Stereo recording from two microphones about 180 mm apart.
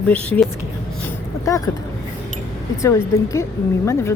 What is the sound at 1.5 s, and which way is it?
Speech, 20° left (ahead or behind).